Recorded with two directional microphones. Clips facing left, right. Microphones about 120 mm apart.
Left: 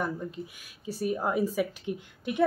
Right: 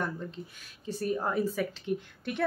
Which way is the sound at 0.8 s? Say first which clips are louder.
Left 1 dB; 10° left (ahead or behind).